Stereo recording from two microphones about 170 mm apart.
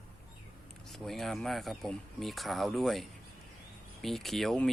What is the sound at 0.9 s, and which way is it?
Speech, centre (ahead or behind).